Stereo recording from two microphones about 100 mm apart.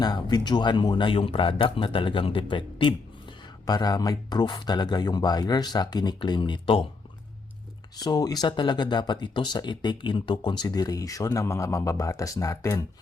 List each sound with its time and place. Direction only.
0.0 s speech: 45° left (ahead or behind)
3.7 s speech: 40° left (ahead or behind); by 6.8 s 55° left (ahead or behind)
7.9 s speech: 40° left (ahead or behind)